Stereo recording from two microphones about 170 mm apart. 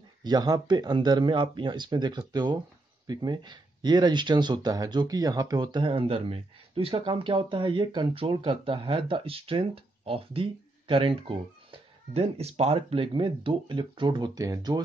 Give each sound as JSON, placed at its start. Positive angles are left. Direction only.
{"t": 0.2, "sound": "speech", "side_deg": -25}